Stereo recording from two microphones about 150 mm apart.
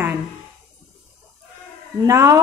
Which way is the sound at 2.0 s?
20° right (ahead or behind).